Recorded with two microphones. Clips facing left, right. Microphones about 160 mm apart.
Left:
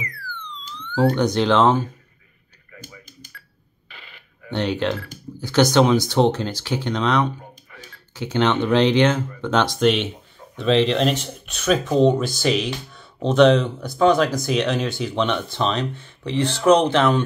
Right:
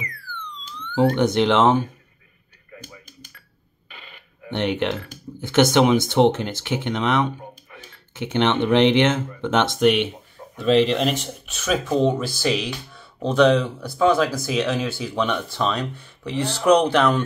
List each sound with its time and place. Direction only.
0.9 s speech: 20° right (ahead or behind)
4.5 s speech: 20° right (ahead or behind)
15.5 s speech: 20° left (ahead or behind)
15.9 s speech: 10° right (ahead or behind)